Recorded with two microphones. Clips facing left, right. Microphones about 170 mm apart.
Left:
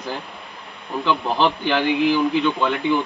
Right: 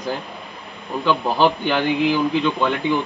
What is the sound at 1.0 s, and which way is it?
Speech, 15° right (ahead or behind).